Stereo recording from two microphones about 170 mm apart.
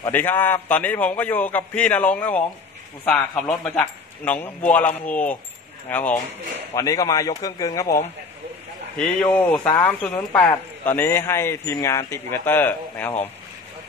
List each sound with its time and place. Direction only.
0.1 s a man's voice: 10° left (ahead or behind)
8.9 s a man's voice: 10° left (ahead or behind)